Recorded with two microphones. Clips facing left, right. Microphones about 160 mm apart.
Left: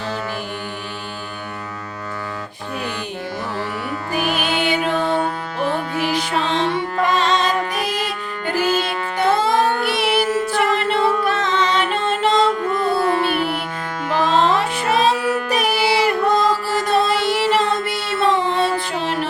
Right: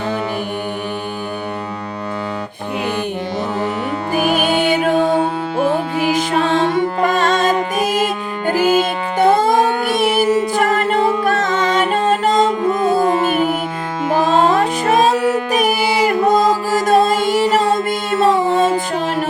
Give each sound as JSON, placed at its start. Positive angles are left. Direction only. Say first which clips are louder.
{"t": 4.1, "sound": "music", "louder": "right 5 dB", "side_deg": -45}
{"t": 4.9, "sound": "music", "louder": "right 5 dB", "side_deg": -15}
{"t": 6.3, "sound": "music", "louder": "right 5 dB", "side_deg": -45}
{"t": 10.2, "sound": "a capella", "louder": "right 5 dB", "side_deg": -15}
{"t": 10.5, "sound": "music", "louder": "right 3 dB", "side_deg": -45}
{"t": 13.0, "sound": "music", "louder": "right 3 dB", "side_deg": -15}
{"t": 13.2, "sound": "music", "louder": "right 4 dB", "side_deg": -45}